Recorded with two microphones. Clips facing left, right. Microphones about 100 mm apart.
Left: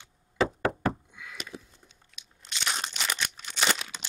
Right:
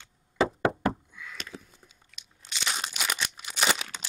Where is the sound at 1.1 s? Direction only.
20° left (ahead or behind).